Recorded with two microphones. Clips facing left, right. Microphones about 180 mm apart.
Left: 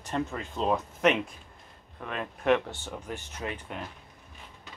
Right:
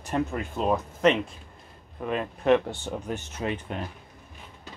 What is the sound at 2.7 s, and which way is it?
Speech, 15° right (ahead or behind).